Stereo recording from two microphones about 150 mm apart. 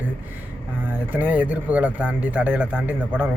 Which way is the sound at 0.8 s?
10° right (ahead or behind).